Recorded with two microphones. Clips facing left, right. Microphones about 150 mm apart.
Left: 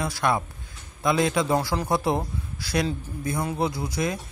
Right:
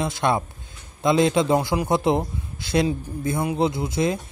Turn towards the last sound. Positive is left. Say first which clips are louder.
# right 4 dB
turn(degrees=-25)  # may be behind; listen again after turning